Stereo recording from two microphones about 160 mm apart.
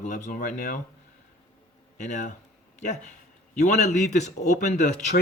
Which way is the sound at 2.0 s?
50° left (ahead or behind).